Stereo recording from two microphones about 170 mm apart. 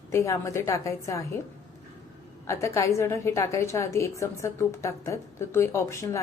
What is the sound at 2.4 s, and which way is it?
A woman's voice, 15° left (ahead or behind).